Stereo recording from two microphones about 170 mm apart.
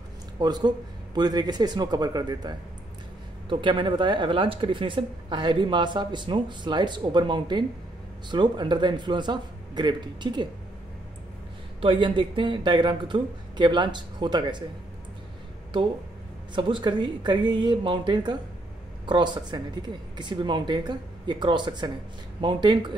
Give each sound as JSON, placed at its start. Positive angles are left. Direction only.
{"t": 0.4, "sound": "speech", "side_deg": -25}
{"t": 11.8, "sound": "speech", "side_deg": -30}
{"t": 16.5, "sound": "speech", "side_deg": -30}